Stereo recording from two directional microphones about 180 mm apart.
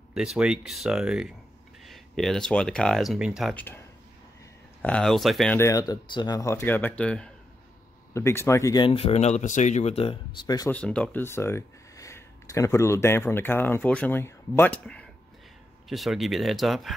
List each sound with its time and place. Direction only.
0.1 s speech: 5° right (ahead or behind)
3.5 s speech: 10° left (ahead or behind)
4.8 s speech: 5° left (ahead or behind)
5.6 s speech: 20° left (ahead or behind)
10.7 s speech: 5° left (ahead or behind)